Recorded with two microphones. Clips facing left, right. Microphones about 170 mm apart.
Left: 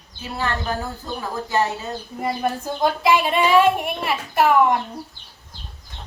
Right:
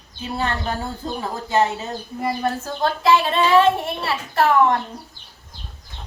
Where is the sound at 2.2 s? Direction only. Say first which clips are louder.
Even; 15° left (ahead or behind).